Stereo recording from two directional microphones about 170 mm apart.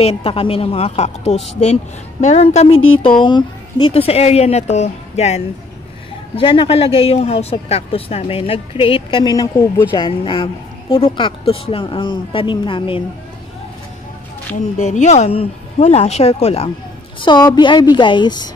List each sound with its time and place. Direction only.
0.0 s speech: 35° left (ahead or behind)
14.8 s speech: 40° left (ahead or behind)
17.2 s a woman's voice: 25° left (ahead or behind)